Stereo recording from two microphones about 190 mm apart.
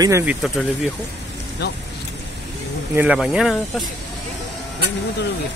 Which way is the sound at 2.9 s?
5° right (ahead or behind).